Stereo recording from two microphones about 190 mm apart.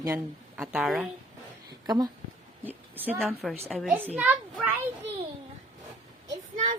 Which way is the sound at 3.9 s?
10° right (ahead or behind).